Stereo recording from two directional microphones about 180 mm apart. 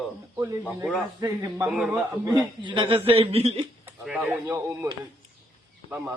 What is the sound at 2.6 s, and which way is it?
A man's voice, 25° right (ahead or behind).